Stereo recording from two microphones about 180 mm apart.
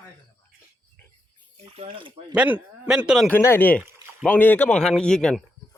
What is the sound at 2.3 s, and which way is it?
Speech, 5° right (ahead or behind).